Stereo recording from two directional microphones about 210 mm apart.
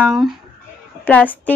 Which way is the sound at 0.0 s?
Centre (ahead or behind).